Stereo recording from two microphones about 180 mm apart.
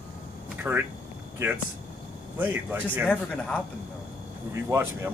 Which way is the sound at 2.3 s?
10° right (ahead or behind).